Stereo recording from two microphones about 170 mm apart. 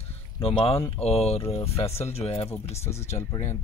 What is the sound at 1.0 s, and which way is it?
Speech, 35° left (ahead or behind).